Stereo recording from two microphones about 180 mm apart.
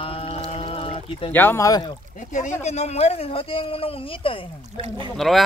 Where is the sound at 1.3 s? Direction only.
15° left (ahead or behind).